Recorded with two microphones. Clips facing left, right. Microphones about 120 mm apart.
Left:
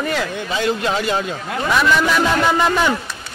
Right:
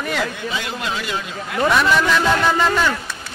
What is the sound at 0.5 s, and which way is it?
A man's voice, 35° left (ahead or behind).